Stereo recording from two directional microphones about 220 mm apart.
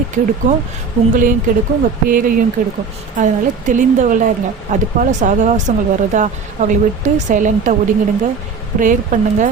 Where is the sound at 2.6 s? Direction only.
40° right (ahead or behind).